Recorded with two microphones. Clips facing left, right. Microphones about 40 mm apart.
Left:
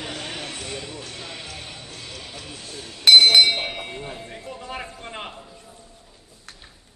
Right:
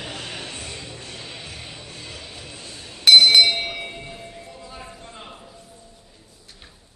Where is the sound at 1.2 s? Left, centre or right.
Left.